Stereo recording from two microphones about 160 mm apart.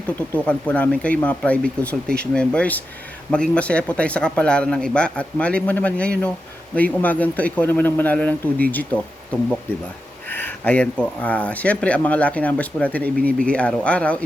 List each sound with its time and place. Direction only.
0.2 s speech: 10° left (ahead or behind)